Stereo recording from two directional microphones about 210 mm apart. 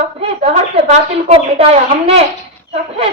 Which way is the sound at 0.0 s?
30° right (ahead or behind).